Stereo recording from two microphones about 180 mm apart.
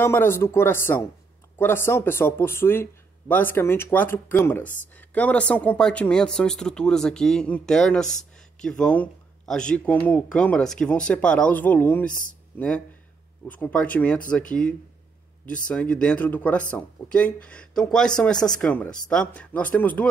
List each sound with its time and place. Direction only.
0.0 s speech: 15° left (ahead or behind)